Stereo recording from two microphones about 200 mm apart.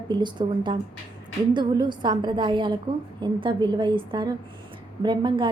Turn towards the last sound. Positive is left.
turn(degrees=-20)  # may be behind; listen again after turning